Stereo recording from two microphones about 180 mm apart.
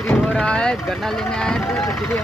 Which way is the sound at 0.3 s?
5° left (ahead or behind).